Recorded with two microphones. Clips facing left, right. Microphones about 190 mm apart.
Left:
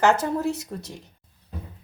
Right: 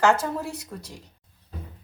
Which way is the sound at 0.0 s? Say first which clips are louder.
Left 2 dB; 20° left (ahead or behind).